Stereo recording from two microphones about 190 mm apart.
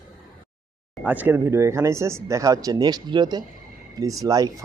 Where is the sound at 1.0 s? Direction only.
10° right (ahead or behind).